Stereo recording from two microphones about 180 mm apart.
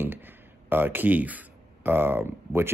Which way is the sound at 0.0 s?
10° right (ahead or behind).